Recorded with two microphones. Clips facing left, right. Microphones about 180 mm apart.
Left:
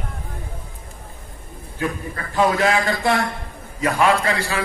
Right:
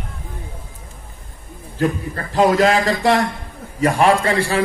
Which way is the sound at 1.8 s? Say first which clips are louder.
Right 5 dB; 40° right (ahead or behind).